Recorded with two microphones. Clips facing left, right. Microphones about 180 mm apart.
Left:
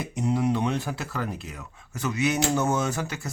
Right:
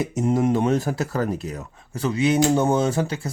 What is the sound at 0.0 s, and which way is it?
Speech, 45° right (ahead or behind).